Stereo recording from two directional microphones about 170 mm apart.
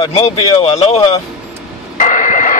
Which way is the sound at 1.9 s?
50° left (ahead or behind).